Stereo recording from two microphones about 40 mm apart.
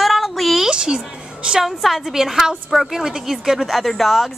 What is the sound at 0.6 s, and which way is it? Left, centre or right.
A woman's voice, centre.